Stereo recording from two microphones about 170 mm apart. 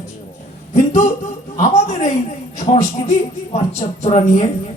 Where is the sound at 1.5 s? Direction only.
40° left (ahead or behind).